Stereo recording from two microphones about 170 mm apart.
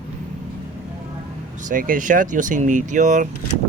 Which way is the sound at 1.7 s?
50° right (ahead or behind).